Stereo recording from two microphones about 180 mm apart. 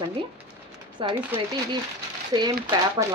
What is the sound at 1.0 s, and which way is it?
A woman's voice, 25° right (ahead or behind).